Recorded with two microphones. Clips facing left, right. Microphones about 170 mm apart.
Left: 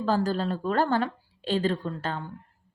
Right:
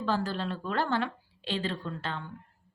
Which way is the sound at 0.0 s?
40° left (ahead or behind).